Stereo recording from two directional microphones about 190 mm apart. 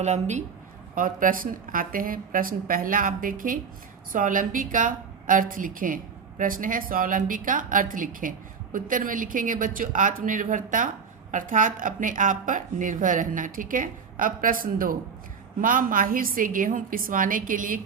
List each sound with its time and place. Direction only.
0.0 s a woman's voice: 35° right (ahead or behind)